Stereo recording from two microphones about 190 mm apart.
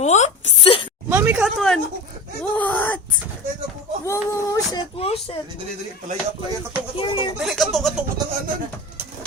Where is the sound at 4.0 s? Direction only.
15° left (ahead or behind).